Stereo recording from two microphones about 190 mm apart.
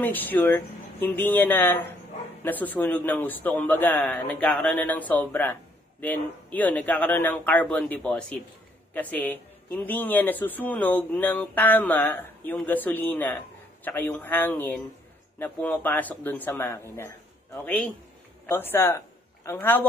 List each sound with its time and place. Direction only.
0.0 s a man's voice: 10° left (ahead or behind)